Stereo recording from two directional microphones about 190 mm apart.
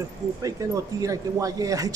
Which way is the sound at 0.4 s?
20° right (ahead or behind).